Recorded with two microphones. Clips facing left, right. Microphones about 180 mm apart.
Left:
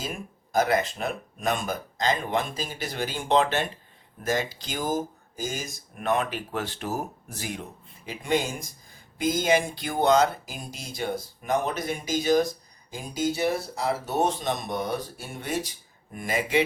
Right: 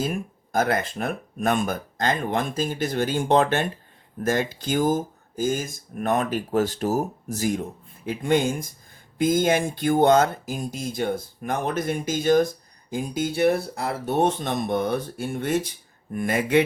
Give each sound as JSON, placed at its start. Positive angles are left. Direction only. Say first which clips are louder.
{"t": 0.0, "sound": "speech", "louder": "right 8 dB", "side_deg": -55}